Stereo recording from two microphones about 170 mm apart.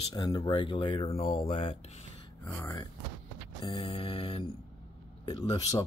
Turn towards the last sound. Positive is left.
turn(degrees=20)  # may be behind; listen again after turning